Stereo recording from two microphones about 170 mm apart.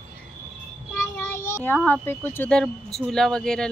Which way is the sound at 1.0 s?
15° left (ahead or behind).